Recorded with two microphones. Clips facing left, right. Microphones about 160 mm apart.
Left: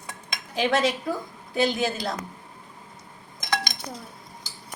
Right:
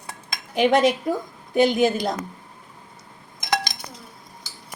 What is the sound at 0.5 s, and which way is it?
Speech, 15° right (ahead or behind).